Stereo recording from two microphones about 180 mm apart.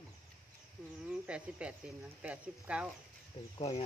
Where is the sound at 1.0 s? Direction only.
5° right (ahead or behind).